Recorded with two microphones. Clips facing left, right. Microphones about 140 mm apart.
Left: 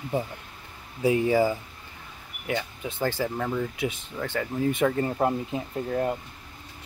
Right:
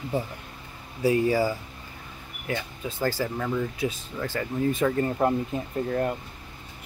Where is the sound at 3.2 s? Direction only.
Centre (ahead or behind).